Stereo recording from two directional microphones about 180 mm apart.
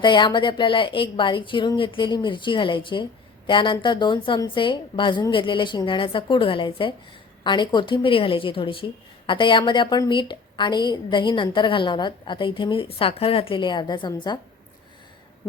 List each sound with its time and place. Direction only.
0.0 s a woman's voice: 25° left (ahead or behind)